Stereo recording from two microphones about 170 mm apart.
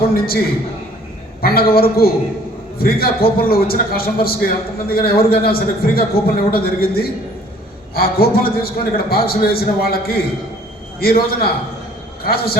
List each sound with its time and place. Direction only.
0.1 s a man's voice: 60° left (ahead or behind)
1.4 s a man's voice: 60° left (ahead or behind)